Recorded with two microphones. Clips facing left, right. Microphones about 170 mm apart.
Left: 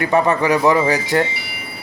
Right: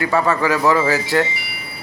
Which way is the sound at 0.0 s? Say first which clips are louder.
Left 2 dB; 20° left (ahead or behind).